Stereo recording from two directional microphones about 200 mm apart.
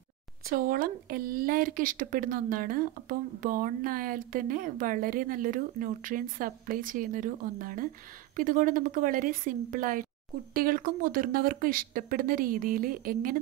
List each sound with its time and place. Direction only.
0.5 s speech: 45° right (ahead or behind)